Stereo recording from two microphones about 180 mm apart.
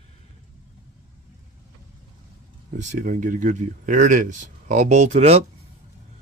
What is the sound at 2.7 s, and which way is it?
Speech, 40° right (ahead or behind).